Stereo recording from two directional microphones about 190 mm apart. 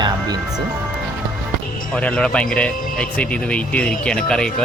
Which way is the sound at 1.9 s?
5° left (ahead or behind).